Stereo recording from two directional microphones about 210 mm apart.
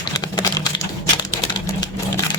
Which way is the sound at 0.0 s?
20° left (ahead or behind).